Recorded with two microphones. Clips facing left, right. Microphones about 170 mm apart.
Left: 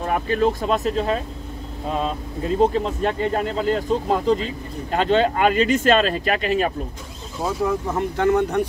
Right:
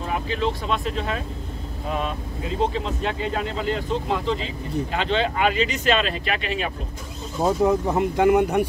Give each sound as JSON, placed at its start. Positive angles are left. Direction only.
{"t": 0.0, "sound": "speech", "side_deg": 50}
{"t": 2.6, "sound": "speech", "side_deg": 45}
{"t": 7.6, "sound": "speech", "side_deg": -15}